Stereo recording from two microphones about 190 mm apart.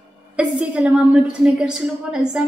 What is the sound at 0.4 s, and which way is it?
A woman's voice, 5° right (ahead or behind).